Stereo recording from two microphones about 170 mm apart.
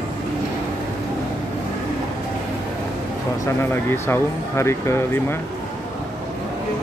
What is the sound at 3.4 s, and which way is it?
Speech, 15° left (ahead or behind).